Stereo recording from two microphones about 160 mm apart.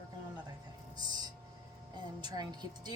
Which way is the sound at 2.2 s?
25° right (ahead or behind).